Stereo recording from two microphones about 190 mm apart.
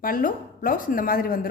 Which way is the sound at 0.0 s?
50° left (ahead or behind).